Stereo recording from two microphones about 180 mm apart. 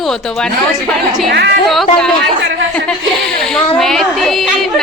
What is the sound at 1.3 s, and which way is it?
Speech, 65° right (ahead or behind).